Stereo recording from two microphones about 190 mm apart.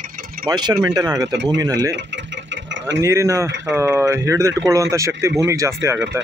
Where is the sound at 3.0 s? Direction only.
15° right (ahead or behind).